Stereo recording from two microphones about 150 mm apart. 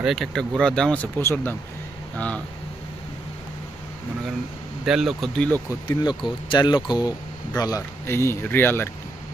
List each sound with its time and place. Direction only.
0.0 s speech: centre (ahead or behind)
1.2 s speech: 20° left (ahead or behind)
4.9 s speech: centre (ahead or behind); by 8.9 s 15° left (ahead or behind)